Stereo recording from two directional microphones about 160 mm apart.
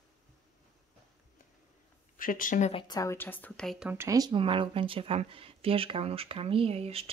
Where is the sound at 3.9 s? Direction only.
20° right (ahead or behind); by 7.0 s 40° right (ahead or behind).